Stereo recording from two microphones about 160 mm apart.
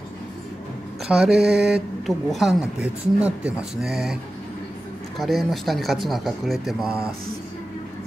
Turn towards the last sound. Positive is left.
turn(degrees=-5)  # may be behind; listen again after turning